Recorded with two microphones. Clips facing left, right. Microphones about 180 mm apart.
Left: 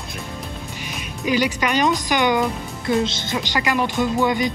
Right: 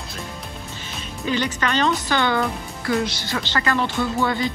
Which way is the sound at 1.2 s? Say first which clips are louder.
Left 3 dB; 10° left (ahead or behind).